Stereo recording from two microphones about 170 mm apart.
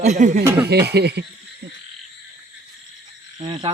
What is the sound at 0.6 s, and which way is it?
Speech, 75° right (ahead or behind).